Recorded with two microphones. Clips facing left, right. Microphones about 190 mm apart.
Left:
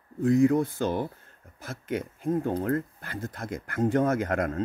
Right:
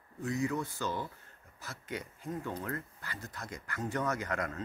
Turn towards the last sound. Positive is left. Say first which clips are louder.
# left 9 dB
turn(degrees=55)  # may be behind; listen again after turning